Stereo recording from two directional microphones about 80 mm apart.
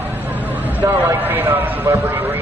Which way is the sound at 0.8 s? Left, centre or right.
Right.